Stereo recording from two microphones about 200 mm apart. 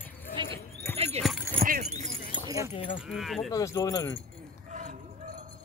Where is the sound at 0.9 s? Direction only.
30° right (ahead or behind).